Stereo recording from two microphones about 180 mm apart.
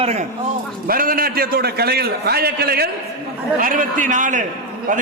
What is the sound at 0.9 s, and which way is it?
A man's voice, 55° right (ahead or behind).